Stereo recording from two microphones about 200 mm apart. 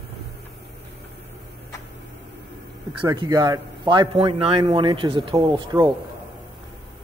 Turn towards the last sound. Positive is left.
turn(degrees=-20)  # may be behind; listen again after turning